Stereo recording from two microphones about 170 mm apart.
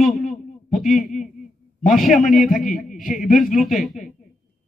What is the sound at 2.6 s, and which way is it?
Speech, 50° left (ahead or behind).